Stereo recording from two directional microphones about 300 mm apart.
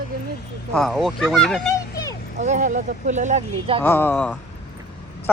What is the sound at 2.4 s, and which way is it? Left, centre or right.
Speech, right.